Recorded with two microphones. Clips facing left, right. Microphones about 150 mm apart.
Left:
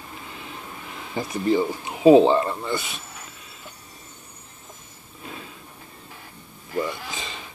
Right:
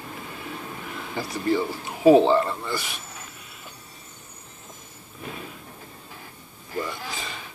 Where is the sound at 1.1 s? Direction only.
20° left (ahead or behind).